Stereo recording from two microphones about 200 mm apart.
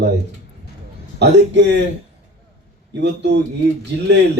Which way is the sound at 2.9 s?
60° right (ahead or behind).